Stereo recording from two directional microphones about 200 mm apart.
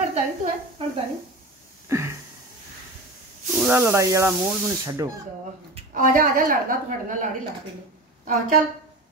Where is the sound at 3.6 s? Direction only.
10° right (ahead or behind).